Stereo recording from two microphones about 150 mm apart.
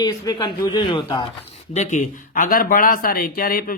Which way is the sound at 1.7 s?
55° left (ahead or behind).